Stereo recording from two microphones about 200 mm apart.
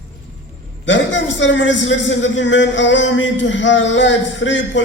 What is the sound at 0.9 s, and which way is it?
A man's voice, 65° left (ahead or behind).